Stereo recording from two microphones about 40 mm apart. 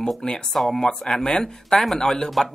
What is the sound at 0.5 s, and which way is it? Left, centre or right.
Speech, centre.